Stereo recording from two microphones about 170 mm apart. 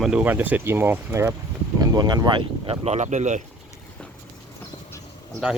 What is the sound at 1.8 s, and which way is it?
Speech, 25° right (ahead or behind).